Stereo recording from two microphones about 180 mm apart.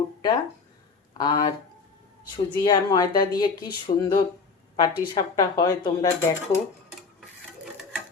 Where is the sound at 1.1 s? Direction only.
25° left (ahead or behind).